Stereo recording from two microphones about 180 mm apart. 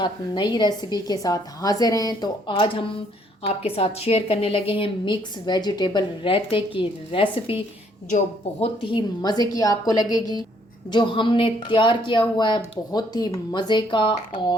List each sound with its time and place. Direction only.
0.0 s a woman's voice: 25° left (ahead or behind)
8.6 s a woman's voice: 30° left (ahead or behind)